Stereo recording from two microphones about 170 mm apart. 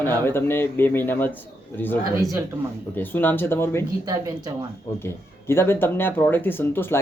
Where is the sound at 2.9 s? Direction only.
10° left (ahead or behind).